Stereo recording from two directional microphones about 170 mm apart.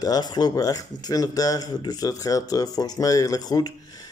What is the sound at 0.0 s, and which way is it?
Speech, 25° left (ahead or behind).